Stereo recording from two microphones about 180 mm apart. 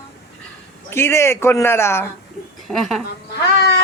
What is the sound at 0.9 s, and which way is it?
A woman's voice, 15° left (ahead or behind).